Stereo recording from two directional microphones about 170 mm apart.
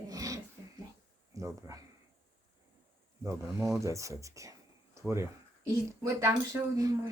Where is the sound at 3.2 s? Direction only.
15° right (ahead or behind).